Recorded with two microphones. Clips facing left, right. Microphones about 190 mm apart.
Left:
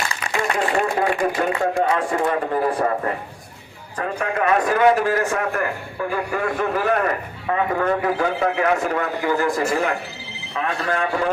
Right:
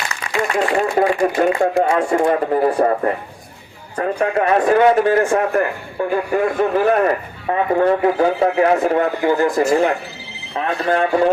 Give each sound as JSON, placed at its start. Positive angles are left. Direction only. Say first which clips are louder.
{"t": 0.9, "sound": "a man's voice", "louder": "right 5 dB", "side_deg": -35}